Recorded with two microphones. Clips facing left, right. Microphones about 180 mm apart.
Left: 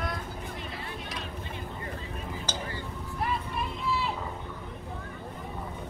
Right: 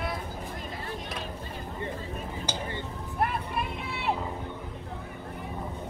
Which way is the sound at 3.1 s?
55° right (ahead or behind).